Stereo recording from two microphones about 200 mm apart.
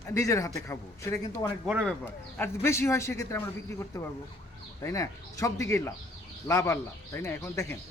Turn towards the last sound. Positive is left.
turn(degrees=15)  # may be behind; listen again after turning